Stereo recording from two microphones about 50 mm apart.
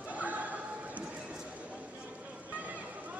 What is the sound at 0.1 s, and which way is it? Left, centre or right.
Neigh, right.